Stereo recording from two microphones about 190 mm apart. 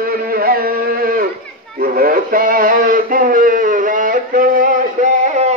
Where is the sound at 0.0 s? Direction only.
50° right (ahead or behind).